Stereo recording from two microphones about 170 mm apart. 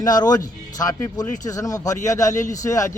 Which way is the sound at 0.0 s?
25° left (ahead or behind).